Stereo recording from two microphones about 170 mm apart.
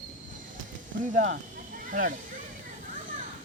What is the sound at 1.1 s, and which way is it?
Speech, 55° right (ahead or behind).